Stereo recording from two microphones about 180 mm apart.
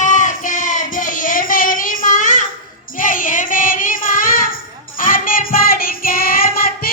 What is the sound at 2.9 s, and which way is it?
Child singing, 50° left (ahead or behind).